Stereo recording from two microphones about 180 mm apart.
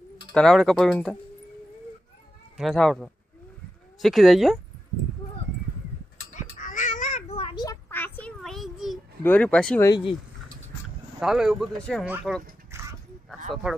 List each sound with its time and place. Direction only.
0.3 s speech: 5° left (ahead or behind)
2.5 s speech: centre (ahead or behind)
6.3 s a sound: 45° left (ahead or behind); by 9.0 s centre (ahead or behind)
9.2 s speech: 10° left (ahead or behind)
9.8 s speech: 25° left (ahead or behind)
11.1 s speech: 5° right (ahead or behind)
12.7 s dog: 15° right (ahead or behind)
13.5 s speech: centre (ahead or behind)